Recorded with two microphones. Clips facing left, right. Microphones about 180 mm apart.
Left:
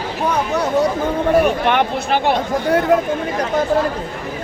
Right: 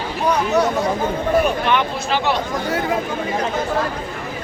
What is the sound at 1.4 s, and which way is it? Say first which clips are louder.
Speech: left 2 dB; 60° left (ahead or behind).